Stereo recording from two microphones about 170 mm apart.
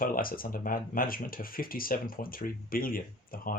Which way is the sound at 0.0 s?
55° left (ahead or behind).